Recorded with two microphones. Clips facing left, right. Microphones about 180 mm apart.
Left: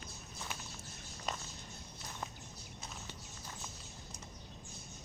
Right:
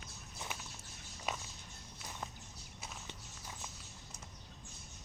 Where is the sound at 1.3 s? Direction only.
5° right (ahead or behind).